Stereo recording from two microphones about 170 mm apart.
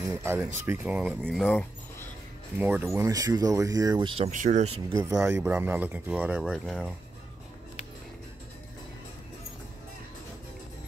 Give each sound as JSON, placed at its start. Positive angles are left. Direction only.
{"t": 0.0, "sound": "speech", "side_deg": -15}
{"t": 2.6, "sound": "speech", "side_deg": -15}
{"t": 4.3, "sound": "speech", "side_deg": -45}
{"t": 5.0, "sound": "speech", "side_deg": -15}